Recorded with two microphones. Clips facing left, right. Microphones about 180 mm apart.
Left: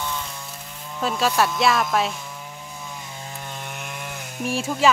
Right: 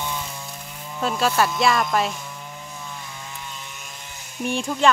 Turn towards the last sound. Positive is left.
turn(degrees=5)  # may be behind; listen again after turning